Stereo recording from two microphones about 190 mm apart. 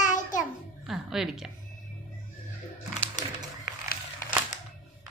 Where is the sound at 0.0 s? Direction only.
40° left (ahead or behind).